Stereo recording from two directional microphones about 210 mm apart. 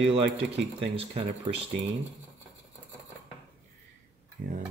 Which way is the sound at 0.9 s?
25° right (ahead or behind).